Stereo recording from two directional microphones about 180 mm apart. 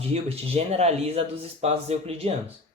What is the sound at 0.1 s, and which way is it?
Speech, 35° right (ahead or behind).